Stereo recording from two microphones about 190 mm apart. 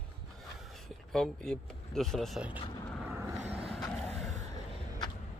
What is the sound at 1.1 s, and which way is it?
Speech, 5° left (ahead or behind).